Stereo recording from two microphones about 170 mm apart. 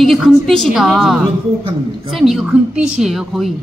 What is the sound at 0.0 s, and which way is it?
A woman's voice, centre (ahead or behind).